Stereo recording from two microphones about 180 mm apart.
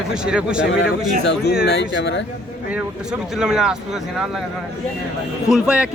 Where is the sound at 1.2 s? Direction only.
70° left (ahead or behind).